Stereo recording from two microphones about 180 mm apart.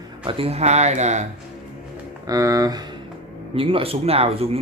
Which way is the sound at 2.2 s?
20° right (ahead or behind).